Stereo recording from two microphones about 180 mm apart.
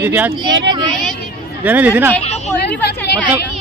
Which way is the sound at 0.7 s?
25° right (ahead or behind).